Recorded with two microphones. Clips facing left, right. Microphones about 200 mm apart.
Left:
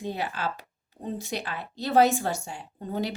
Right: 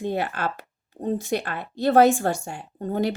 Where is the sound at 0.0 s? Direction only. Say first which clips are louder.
Right 5 dB; 55° right (ahead or behind).